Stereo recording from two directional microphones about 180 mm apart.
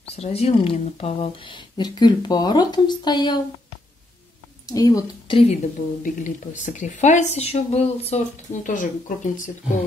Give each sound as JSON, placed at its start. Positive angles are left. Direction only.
{"t": 0.0, "sound": "speech", "side_deg": 35}
{"t": 4.6, "sound": "speech", "side_deg": 20}
{"t": 6.0, "sound": "speech", "side_deg": 45}